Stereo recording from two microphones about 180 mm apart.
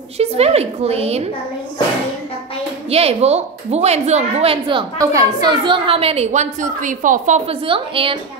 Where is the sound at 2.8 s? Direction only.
35° right (ahead or behind).